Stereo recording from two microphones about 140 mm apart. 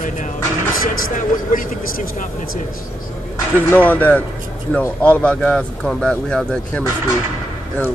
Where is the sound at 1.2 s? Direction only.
70° left (ahead or behind).